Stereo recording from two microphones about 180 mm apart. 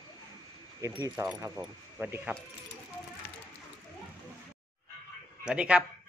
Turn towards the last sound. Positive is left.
turn(degrees=-5)  # may be behind; listen again after turning